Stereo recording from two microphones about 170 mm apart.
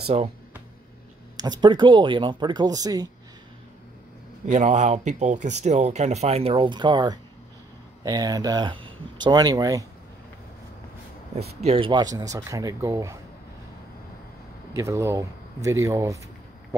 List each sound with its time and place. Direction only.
0.0 s speech: 40° right (ahead or behind)
1.3 s speech: 25° right (ahead or behind)
4.5 s speech: 45° right (ahead or behind); by 9.8 s 20° right (ahead or behind)
11.3 s speech: 35° right (ahead or behind); by 13.2 s 20° right (ahead or behind)
14.8 s speech: 15° right (ahead or behind)